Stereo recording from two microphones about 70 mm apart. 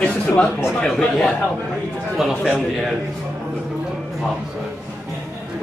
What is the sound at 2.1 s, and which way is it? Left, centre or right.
Speech, centre.